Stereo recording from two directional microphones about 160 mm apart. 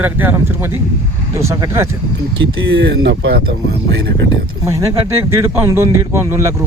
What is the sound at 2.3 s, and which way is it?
Speech, 90° right.